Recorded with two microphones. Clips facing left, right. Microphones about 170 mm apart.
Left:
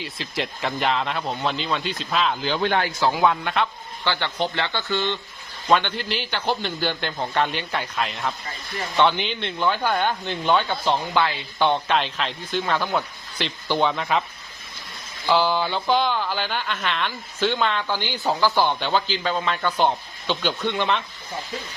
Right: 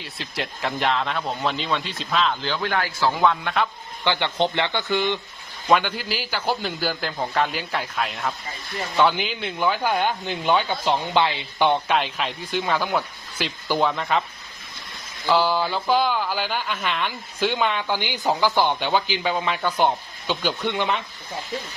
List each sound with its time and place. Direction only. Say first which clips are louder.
0.0 s a man's voice: left 2 dB; centre (ahead or behind)
2.6 s speech: left 4 dB; 25° left (ahead or behind)
3.2 s a man's voice: right 1 dB; 5° left (ahead or behind)
4.0 s a man's voice: right 3 dB; 20° right (ahead or behind); by 14.3 s centre (ahead or behind)
15.3 s speech: even; centre (ahead or behind)